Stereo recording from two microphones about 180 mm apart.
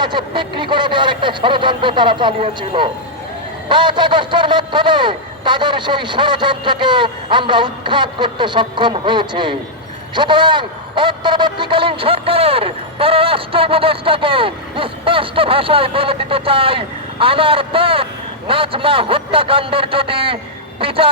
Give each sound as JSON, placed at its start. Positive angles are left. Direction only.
{"t": 0.0, "sound": "a man's voice", "side_deg": -25}